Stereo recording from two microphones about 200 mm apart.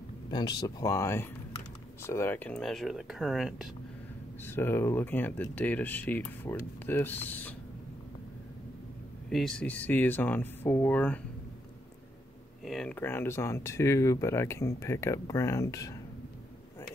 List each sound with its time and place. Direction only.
0.3 s speech: 20° left (ahead or behind); by 3.7 s 5° right (ahead or behind)
4.4 s speech: 10° left (ahead or behind)
9.3 s speech: 5° left (ahead or behind)
12.6 s speech: 5° left (ahead or behind)